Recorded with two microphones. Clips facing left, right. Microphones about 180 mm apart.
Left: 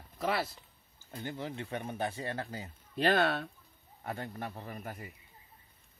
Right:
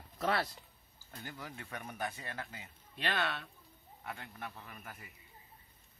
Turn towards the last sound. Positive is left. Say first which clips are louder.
# left 8 dB
turn(degrees=35)  # may be behind; listen again after turning